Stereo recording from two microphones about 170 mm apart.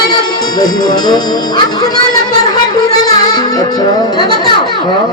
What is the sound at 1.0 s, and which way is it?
Music, 25° left (ahead or behind).